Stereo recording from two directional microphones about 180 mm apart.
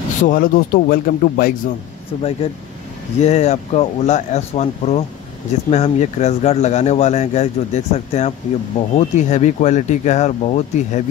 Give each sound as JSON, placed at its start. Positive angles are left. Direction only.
{"t": 0.2, "sound": "a man's voice", "side_deg": 50}
{"t": 3.2, "sound": "speech", "side_deg": 35}